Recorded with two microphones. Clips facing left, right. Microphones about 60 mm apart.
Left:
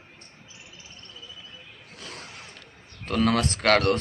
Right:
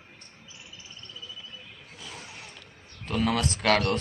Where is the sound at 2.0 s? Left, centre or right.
Left.